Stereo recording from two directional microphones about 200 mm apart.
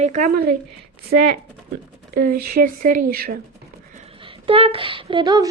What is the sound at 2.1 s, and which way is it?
Speech, 45° right (ahead or behind).